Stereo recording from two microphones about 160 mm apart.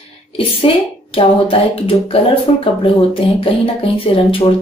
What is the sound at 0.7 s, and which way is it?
Speech, 35° left (ahead or behind).